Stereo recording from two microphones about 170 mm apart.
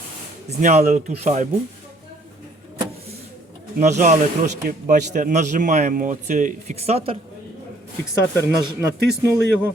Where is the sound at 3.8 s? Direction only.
45° right (ahead or behind).